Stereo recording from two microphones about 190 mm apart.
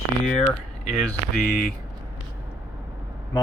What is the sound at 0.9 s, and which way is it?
Speech, centre (ahead or behind).